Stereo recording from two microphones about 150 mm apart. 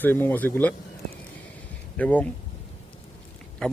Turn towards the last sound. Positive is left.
turn(degrees=5)  # may be behind; listen again after turning